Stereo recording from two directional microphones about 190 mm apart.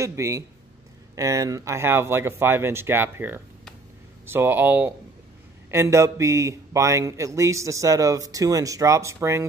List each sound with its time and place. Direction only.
0.0 s a man's voice: 15° right (ahead or behind)